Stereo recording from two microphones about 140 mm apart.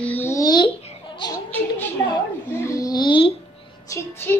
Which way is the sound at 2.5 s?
20° left (ahead or behind).